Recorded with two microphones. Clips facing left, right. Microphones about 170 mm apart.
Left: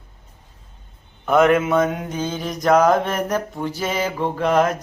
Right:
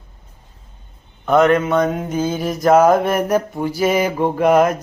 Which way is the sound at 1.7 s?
Centre (ahead or behind).